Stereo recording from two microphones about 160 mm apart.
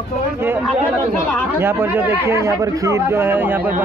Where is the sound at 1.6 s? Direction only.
15° right (ahead or behind).